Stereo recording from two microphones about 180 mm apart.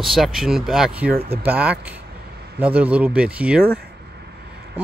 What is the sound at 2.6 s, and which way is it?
Speech, 5° right (ahead or behind).